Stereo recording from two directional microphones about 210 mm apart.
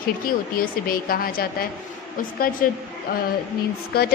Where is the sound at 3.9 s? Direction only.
50° left (ahead or behind).